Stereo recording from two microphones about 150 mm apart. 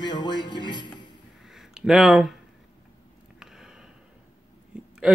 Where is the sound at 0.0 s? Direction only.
30° left (ahead or behind).